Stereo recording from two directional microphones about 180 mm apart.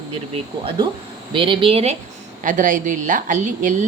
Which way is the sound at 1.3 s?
30° right (ahead or behind).